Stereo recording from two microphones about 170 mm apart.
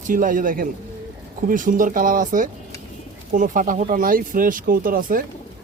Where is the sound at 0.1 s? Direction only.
55° right (ahead or behind).